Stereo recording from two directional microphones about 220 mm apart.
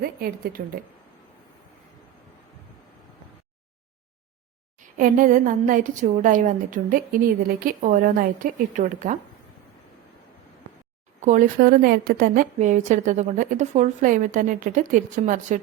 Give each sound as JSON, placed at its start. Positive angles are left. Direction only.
{"t": 0.0, "sound": "speech", "side_deg": -45}
{"t": 4.8, "sound": "a woman's voice", "side_deg": -35}
{"t": 11.2, "sound": "a woman's voice", "side_deg": -35}